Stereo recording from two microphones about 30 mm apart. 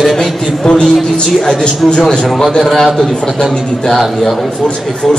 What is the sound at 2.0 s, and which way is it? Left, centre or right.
Speech, left.